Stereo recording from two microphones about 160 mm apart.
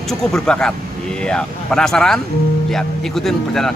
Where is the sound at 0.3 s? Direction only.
5° left (ahead or behind).